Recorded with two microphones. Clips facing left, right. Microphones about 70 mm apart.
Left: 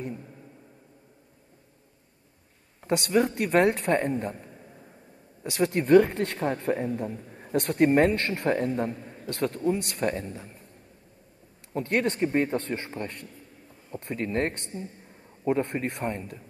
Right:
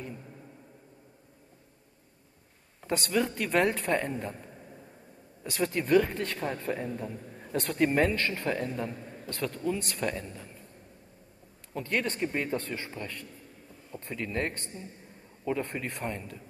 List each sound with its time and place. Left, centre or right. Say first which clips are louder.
2.8 s speech: left 5 dB; left
3.5 s speech: left 4 dB; left
5.6 s a man's voice: left 6 dB; left
7.5 s speech: left 5 dB; left
8.2 s a man's voice: left 4 dB; left
9.0 s a sound: left 1 dB; left
9.3 s a man's voice: left 5 dB; left
11.7 s a man's voice: left 5 dB; left